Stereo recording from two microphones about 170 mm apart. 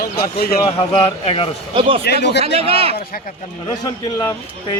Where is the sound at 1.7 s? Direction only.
30° right (ahead or behind).